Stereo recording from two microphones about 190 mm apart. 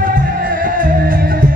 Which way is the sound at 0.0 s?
45° right (ahead or behind).